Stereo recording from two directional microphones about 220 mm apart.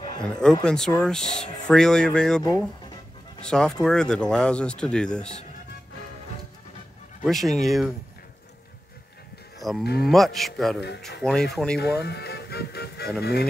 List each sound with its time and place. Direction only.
0.2 s speech: 5° left (ahead or behind)
3.4 s speech: 5° left (ahead or behind)
7.2 s speech: centre (ahead or behind)
9.6 s cattle: centre (ahead or behind)
10.0 s speech: centre (ahead or behind)
11.8 s speech: 50° left (ahead or behind)